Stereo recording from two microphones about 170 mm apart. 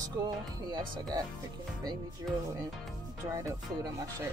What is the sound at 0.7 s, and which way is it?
Speech, 25° right (ahead or behind).